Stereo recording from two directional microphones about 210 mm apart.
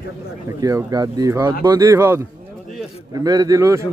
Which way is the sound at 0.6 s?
15° right (ahead or behind).